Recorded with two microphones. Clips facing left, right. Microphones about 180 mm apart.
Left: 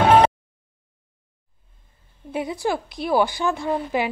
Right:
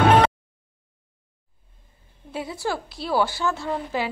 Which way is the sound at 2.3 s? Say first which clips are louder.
Left 4 dB; 15° left (ahead or behind).